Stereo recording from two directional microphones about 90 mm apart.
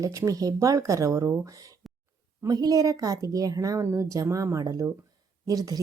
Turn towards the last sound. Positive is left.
turn(degrees=-45)  # may be behind; listen again after turning